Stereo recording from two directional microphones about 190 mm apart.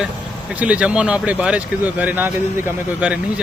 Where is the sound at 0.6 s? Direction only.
5° right (ahead or behind).